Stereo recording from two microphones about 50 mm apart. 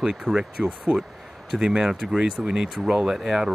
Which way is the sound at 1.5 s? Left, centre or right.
Centre.